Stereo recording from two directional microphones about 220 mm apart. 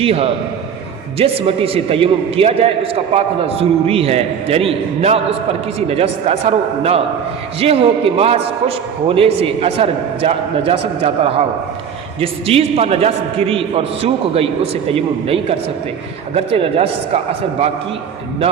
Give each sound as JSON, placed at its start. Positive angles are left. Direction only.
{"t": 0.0, "sound": "a man's voice", "side_deg": -25}